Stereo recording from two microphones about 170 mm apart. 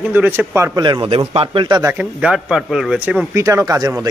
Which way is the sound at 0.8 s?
25° right (ahead or behind).